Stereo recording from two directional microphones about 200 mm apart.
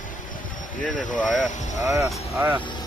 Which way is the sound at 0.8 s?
40° left (ahead or behind).